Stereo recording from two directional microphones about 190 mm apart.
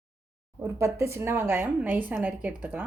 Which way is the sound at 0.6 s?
15° right (ahead or behind).